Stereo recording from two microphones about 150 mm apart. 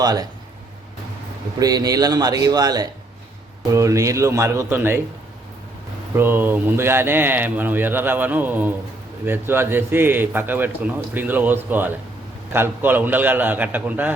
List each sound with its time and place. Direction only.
0.0 s a man's voice: 25° right (ahead or behind)
1.5 s a man's voice: 25° right (ahead or behind)
6.1 s a man's voice: 15° right (ahead or behind)